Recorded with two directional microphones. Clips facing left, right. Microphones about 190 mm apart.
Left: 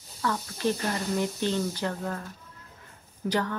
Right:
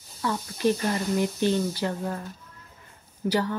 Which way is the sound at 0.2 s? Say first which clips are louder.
Right 3 dB; 15° right (ahead or behind).